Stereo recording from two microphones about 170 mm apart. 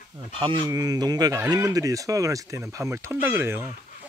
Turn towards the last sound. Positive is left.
turn(degrees=-15)  # may be behind; listen again after turning